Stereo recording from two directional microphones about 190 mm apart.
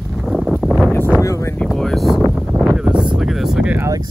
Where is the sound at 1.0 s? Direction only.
10° left (ahead or behind).